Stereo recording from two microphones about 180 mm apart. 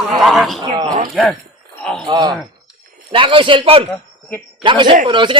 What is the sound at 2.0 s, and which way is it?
A man's voice, 25° right (ahead or behind).